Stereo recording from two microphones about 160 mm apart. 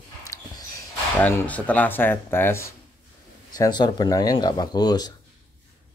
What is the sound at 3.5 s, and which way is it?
Speech, 25° left (ahead or behind).